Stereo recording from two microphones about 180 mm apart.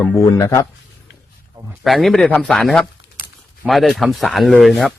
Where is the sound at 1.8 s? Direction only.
Centre (ahead or behind).